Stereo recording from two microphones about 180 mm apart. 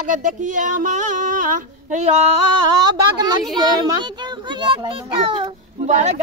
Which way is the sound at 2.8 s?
20° right (ahead or behind).